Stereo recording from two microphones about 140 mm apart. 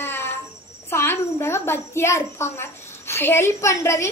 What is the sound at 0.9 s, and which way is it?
A child's voice, 20° left (ahead or behind).